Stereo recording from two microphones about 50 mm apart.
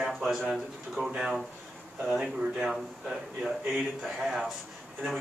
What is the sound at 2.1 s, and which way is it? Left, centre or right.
Speech, centre.